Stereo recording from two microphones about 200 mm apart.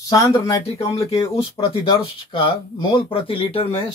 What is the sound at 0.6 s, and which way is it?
Speech, 30° left (ahead or behind).